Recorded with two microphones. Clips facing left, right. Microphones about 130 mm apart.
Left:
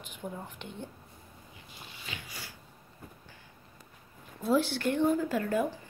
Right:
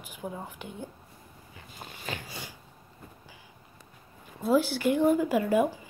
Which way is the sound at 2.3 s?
20° right (ahead or behind).